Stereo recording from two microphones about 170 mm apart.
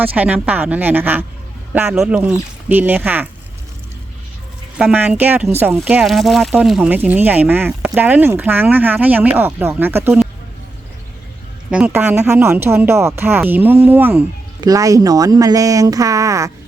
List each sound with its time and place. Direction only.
0.0 s speech: 10° right (ahead or behind)
4.8 s speech: 10° right (ahead or behind)
11.7 s speech: 5° right (ahead or behind)